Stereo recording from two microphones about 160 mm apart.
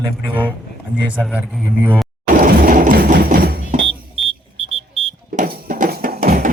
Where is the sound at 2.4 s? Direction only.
60° right (ahead or behind).